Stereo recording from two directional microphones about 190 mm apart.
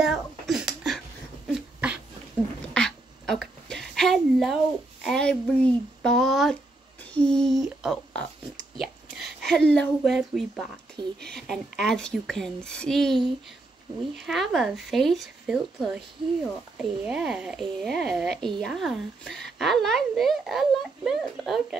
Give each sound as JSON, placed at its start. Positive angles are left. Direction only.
{"t": 0.0, "sound": "a sound", "side_deg": 0}
{"t": 1.5, "sound": "dog", "side_deg": -5}
{"t": 2.7, "sound": "a sound", "side_deg": 0}
{"t": 5.0, "sound": "a woman's voice", "side_deg": 5}
{"t": 11.0, "sound": "speech", "side_deg": -25}
{"t": 11.3, "sound": "a woman's voice", "side_deg": 0}